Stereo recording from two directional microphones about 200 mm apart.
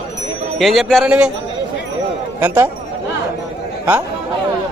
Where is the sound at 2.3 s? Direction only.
10° right (ahead or behind).